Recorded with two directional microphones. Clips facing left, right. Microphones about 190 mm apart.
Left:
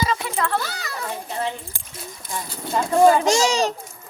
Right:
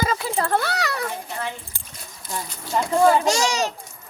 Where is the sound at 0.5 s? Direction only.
65° right (ahead or behind).